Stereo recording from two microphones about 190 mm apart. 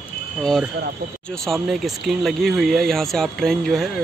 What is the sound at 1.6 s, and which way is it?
Speech, centre (ahead or behind).